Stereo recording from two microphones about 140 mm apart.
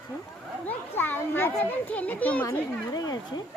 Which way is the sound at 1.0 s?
15° left (ahead or behind).